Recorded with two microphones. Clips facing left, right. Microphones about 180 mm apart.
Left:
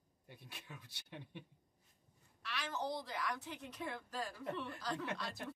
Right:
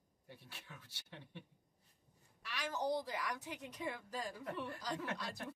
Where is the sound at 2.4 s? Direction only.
15° right (ahead or behind).